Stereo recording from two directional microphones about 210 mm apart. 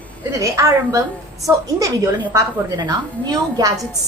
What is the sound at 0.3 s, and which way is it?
A woman's voice, 15° right (ahead or behind).